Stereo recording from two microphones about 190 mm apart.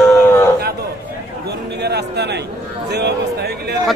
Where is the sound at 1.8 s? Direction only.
60° right (ahead or behind).